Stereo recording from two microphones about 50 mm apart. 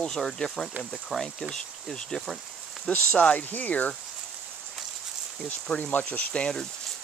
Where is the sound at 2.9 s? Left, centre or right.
Left.